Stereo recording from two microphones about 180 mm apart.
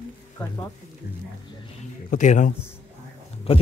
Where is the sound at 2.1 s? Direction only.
45° left (ahead or behind).